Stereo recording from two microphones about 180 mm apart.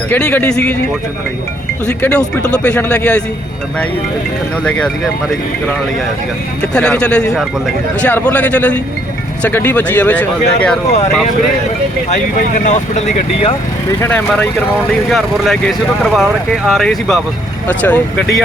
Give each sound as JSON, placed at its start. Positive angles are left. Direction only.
{"t": 0.1, "sound": "speech", "side_deg": 10}
{"t": 1.9, "sound": "speech", "side_deg": 10}
{"t": 4.6, "sound": "speech", "side_deg": 5}
{"t": 6.7, "sound": "speech", "side_deg": 5}
{"t": 12.1, "sound": "speech", "side_deg": 45}
{"t": 14.0, "sound": "speech", "side_deg": 10}